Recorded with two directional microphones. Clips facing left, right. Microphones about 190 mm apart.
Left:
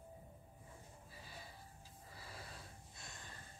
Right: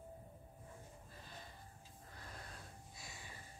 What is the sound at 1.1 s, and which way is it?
Sniff, 10° left (ahead or behind).